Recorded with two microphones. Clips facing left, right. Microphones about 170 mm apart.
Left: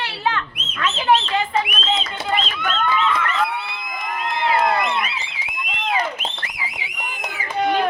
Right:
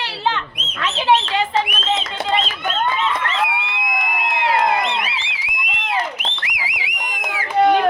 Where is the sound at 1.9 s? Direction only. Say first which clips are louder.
Right 3 dB; 20° right (ahead or behind).